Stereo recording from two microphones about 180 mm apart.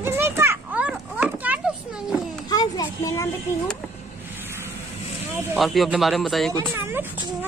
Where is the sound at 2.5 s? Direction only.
20° left (ahead or behind).